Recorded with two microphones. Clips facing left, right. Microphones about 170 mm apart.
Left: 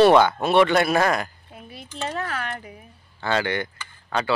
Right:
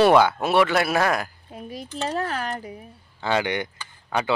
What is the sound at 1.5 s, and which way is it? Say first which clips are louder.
Speech: right 4 dB; 40° right (ahead or behind).